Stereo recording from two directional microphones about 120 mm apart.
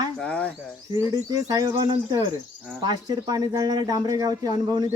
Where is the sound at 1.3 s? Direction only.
30° right (ahead or behind).